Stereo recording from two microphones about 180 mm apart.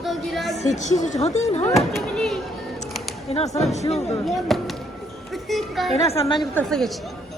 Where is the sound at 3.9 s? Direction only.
35° left (ahead or behind).